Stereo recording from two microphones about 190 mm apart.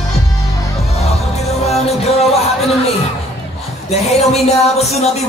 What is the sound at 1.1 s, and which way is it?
Music, 35° left (ahead or behind).